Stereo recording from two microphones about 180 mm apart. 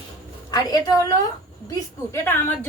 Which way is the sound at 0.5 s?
20° left (ahead or behind).